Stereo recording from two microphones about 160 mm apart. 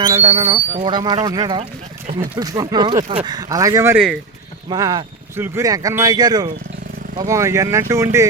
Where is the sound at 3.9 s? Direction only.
Centre (ahead or behind).